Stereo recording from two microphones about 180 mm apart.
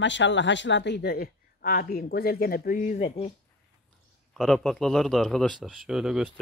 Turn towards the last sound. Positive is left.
turn(degrees=-5)  # may be behind; listen again after turning